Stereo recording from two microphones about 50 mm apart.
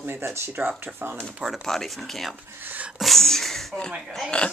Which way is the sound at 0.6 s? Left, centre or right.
Right.